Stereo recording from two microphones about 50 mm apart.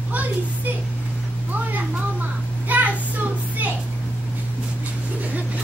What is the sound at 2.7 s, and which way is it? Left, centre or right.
Child singing, right.